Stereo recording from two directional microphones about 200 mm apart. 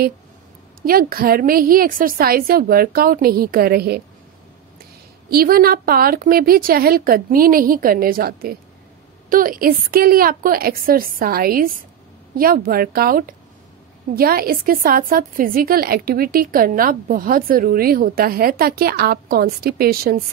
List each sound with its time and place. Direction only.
0.8 s a woman's voice: 45° right (ahead or behind)
5.3 s a woman's voice: 50° right (ahead or behind)